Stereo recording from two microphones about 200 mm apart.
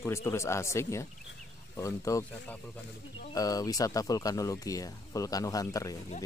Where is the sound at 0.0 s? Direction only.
15° left (ahead or behind).